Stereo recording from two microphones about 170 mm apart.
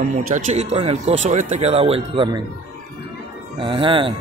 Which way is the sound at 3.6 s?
30° right (ahead or behind).